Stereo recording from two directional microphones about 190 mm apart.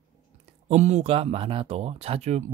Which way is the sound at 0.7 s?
40° right (ahead or behind).